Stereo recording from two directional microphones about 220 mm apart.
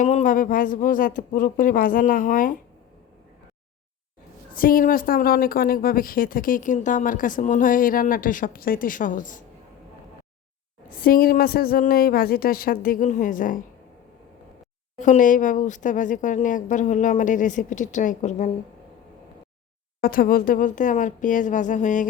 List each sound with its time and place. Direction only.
0.0 s a woman's voice: 30° left (ahead or behind)
4.5 s a woman's voice: 40° left (ahead or behind)
11.0 s a woman's voice: 40° left (ahead or behind)
15.0 s a woman's voice: 35° left (ahead or behind)
20.0 s a woman's voice: 40° left (ahead or behind)